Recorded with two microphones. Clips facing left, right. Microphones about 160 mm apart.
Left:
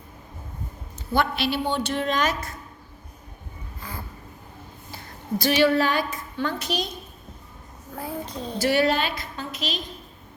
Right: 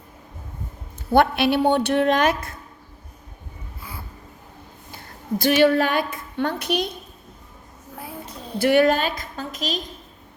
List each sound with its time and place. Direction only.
1.1 s a woman's voice: 55° right (ahead or behind)
3.8 s a sound: 10° right (ahead or behind)
5.4 s a woman's voice: 50° right (ahead or behind)
8.5 s a woman's voice: 55° right (ahead or behind)